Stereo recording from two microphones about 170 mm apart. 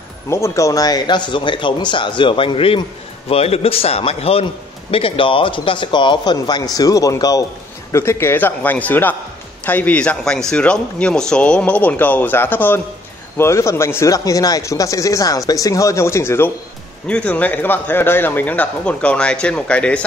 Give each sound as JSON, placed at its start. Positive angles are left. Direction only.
{"t": 0.3, "sound": "speech", "side_deg": 15}